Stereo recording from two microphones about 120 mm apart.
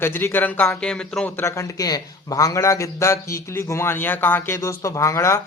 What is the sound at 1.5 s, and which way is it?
A man's voice, 25° left (ahead or behind).